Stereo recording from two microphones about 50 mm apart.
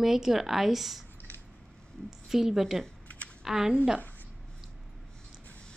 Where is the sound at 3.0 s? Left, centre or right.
Left.